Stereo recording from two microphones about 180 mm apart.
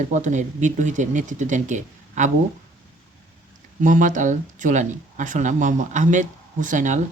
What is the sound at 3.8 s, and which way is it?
Speech, 45° right (ahead or behind).